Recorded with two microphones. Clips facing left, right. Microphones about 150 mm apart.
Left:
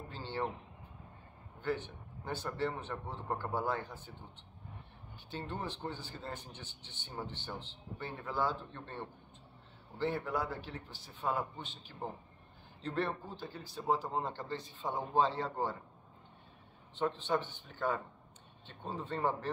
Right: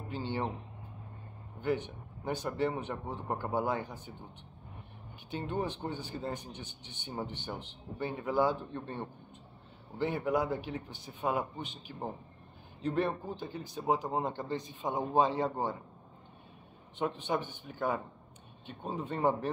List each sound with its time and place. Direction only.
0.1 s speech: 15° right (ahead or behind)
1.6 s speech: 15° right (ahead or behind)
5.3 s speech: 15° right (ahead or behind)
16.9 s speech: 15° right (ahead or behind)